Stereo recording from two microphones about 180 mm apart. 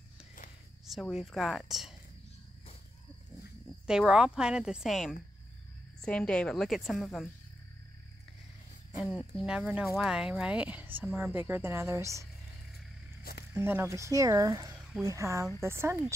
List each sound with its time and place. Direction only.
0.8 s speech: centre (ahead or behind)
3.8 s speech: 5° right (ahead or behind)
9.1 s speech: 5° right (ahead or behind)
13.2 s zipper: 60° left (ahead or behind)
13.5 s speech: 10° right (ahead or behind)